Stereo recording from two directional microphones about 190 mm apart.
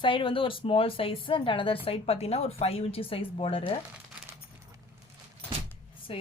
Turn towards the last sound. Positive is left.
turn(degrees=30)  # may be behind; listen again after turning